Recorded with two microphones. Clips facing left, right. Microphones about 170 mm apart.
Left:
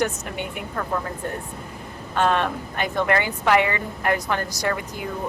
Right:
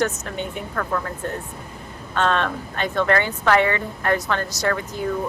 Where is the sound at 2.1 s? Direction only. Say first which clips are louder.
Even; 10° left (ahead or behind).